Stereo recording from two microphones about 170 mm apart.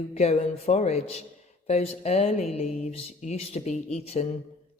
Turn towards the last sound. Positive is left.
turn(degrees=40)  # may be behind; listen again after turning